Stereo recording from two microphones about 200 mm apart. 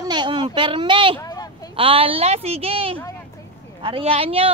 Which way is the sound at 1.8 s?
30° right (ahead or behind).